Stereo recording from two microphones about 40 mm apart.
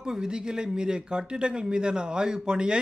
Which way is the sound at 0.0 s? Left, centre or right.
Centre.